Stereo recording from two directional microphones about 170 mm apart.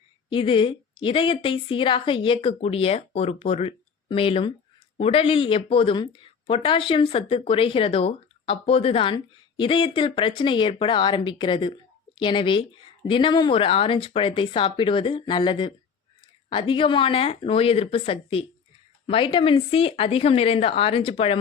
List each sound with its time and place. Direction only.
0.3 s speech: 30° left (ahead or behind)